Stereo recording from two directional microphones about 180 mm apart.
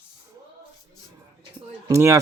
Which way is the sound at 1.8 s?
15° right (ahead or behind).